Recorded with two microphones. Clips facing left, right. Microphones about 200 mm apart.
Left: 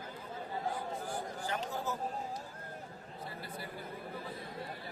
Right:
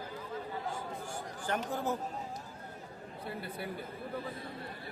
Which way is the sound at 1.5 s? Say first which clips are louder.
Right 6 dB; 50° right (ahead or behind).